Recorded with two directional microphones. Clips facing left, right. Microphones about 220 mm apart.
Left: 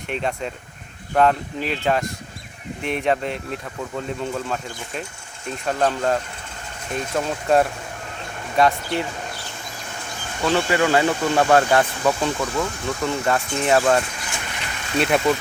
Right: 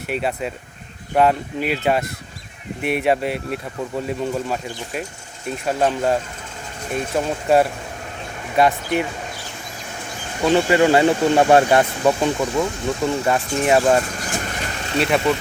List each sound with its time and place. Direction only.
0.1 s speech: 5° right (ahead or behind)
8.5 s speech: 15° right (ahead or behind)
10.4 s speech: 20° right (ahead or behind)
14.2 s vehicle: 40° right (ahead or behind)
14.9 s speech: centre (ahead or behind)